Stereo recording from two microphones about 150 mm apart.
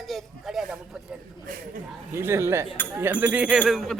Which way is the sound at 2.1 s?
15° right (ahead or behind).